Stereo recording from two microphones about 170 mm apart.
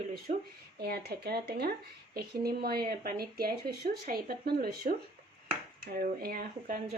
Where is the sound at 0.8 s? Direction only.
70° right (ahead or behind).